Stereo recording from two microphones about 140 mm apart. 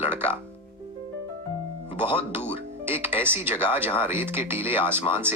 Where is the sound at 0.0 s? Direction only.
15° right (ahead or behind).